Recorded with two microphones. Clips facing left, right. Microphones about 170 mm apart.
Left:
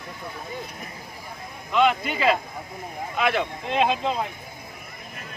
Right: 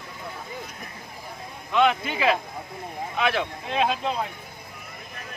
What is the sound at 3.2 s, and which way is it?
Speech, 15° left (ahead or behind).